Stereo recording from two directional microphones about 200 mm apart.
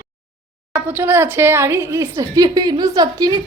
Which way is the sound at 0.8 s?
10° right (ahead or behind).